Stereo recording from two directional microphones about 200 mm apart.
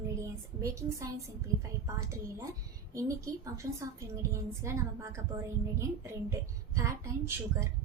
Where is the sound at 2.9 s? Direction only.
15° right (ahead or behind).